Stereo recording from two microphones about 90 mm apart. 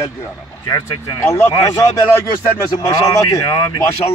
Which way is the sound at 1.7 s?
30° left (ahead or behind).